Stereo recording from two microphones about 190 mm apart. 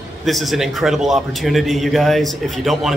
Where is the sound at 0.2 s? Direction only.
Centre (ahead or behind).